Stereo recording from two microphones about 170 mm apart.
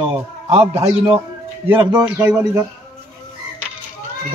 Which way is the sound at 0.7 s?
15° right (ahead or behind).